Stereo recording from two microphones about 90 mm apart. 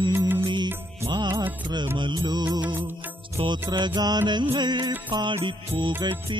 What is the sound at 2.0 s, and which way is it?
Music, 50° right (ahead or behind).